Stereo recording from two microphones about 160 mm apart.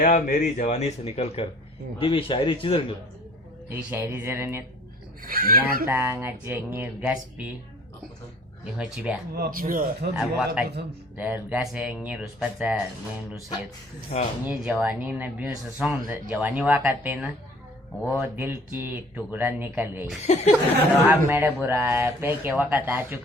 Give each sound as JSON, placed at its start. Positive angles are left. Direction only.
{"t": 0.0, "sound": "a man's voice", "side_deg": 55}
{"t": 3.7, "sound": "speech", "side_deg": -15}
{"t": 5.2, "sound": "speech", "side_deg": -65}
{"t": 5.8, "sound": "speech", "side_deg": -15}
{"t": 8.6, "sound": "speech", "side_deg": -5}
{"t": 9.3, "sound": "speech", "side_deg": -65}
{"t": 10.2, "sound": "speech", "side_deg": -5}
{"t": 14.1, "sound": "speech", "side_deg": 45}
{"t": 14.4, "sound": "speech", "side_deg": -10}
{"t": 20.2, "sound": "speech", "side_deg": 45}
{"t": 21.1, "sound": "speech", "side_deg": -15}